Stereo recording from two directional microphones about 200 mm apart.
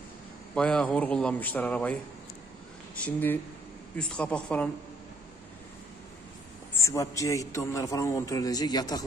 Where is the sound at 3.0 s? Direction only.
10° left (ahead or behind).